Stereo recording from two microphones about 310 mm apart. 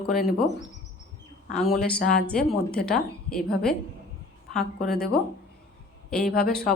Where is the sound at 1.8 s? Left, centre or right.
Left.